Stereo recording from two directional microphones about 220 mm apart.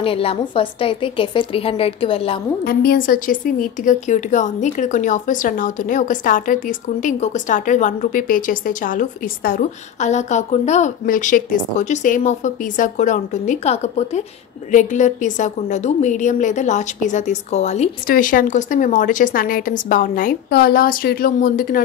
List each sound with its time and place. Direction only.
0.0 s a woman's voice: 25° left (ahead or behind)
2.6 s a woman's voice: 45° left (ahead or behind)